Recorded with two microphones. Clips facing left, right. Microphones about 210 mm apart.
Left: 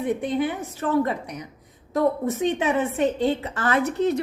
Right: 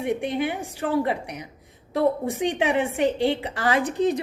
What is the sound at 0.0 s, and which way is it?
Speech, 10° right (ahead or behind).